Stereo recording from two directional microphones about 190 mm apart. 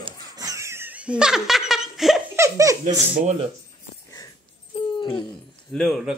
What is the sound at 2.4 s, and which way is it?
Laughter, 15° right (ahead or behind).